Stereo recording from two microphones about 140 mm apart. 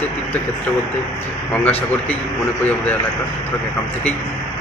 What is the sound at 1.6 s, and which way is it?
Speech, 15° left (ahead or behind).